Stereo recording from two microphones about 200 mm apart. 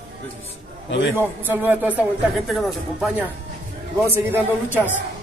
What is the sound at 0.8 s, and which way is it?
Speech, 65° left (ahead or behind).